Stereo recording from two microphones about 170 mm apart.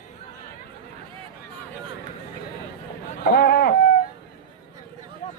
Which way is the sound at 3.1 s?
60° left (ahead or behind).